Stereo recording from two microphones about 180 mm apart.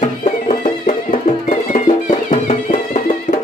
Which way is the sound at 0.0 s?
40° left (ahead or behind).